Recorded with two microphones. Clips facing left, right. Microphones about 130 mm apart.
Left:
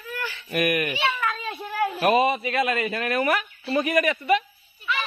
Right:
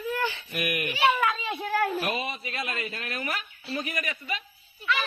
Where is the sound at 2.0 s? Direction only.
60° left (ahead or behind).